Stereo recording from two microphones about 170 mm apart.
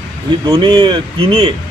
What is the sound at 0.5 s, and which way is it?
Speech, 30° right (ahead or behind).